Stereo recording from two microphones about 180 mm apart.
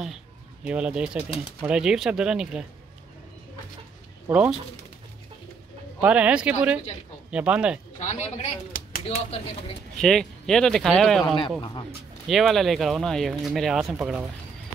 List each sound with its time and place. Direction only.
0.7 s speech: 5° right (ahead or behind)
4.3 s speech: 5° right (ahead or behind)
5.9 s speech: 5° right (ahead or behind)
8.0 s speech: 40° left (ahead or behind)
9.0 s speech: 35° left (ahead or behind)
9.9 s speech: 5° left (ahead or behind)